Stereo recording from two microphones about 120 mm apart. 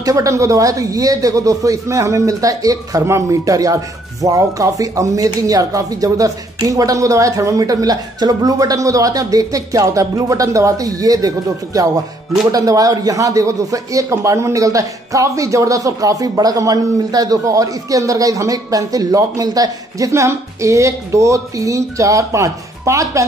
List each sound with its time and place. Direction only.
0.0 s speech: 25° right (ahead or behind)